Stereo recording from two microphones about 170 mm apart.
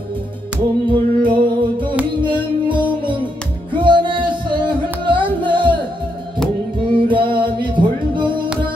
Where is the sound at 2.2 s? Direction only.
30° right (ahead or behind).